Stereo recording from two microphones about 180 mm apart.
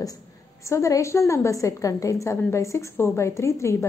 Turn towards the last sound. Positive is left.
turn(degrees=15)  # may be behind; listen again after turning